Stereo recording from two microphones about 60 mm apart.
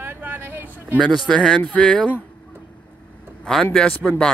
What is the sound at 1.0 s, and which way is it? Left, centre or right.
Speech, centre.